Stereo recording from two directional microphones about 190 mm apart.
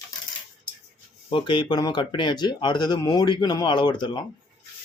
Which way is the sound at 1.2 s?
25° left (ahead or behind).